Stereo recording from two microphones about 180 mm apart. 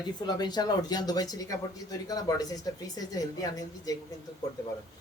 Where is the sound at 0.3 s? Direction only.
25° left (ahead or behind).